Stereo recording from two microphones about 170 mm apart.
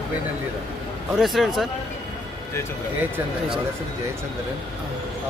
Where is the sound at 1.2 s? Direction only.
Centre (ahead or behind).